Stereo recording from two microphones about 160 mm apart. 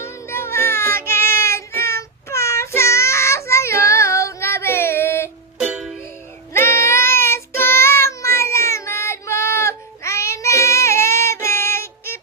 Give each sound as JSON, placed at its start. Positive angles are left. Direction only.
{"t": 0.0, "sound": "music", "side_deg": 15}
{"t": 5.5, "sound": "music", "side_deg": -5}
{"t": 6.5, "sound": "child singing", "side_deg": 15}